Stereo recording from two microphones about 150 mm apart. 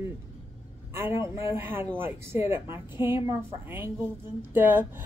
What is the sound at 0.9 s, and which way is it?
A woman's voice, 20° right (ahead or behind).